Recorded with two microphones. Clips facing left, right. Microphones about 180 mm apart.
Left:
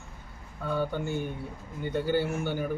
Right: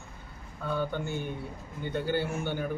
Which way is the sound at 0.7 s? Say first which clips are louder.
Left 2 dB; 10° left (ahead or behind).